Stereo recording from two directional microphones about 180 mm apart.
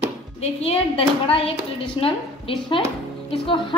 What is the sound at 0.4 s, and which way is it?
A woman's voice, 35° left (ahead or behind).